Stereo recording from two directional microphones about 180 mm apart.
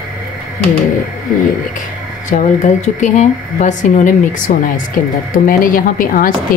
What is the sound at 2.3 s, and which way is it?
Speech, 40° left (ahead or behind).